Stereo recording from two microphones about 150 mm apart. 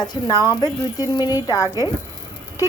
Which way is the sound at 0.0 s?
30° left (ahead or behind).